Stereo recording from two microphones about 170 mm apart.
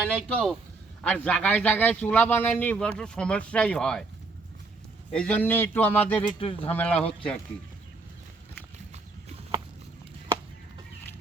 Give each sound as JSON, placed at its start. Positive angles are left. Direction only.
{"t": 0.1, "sound": "a man's voice", "side_deg": 5}
{"t": 5.1, "sound": "a man's voice", "side_deg": 5}
{"t": 6.4, "sound": "speech", "side_deg": 30}
{"t": 6.7, "sound": "a man's voice", "side_deg": 10}